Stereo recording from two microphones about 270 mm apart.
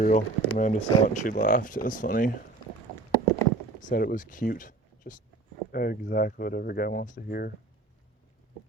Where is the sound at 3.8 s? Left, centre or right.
Left.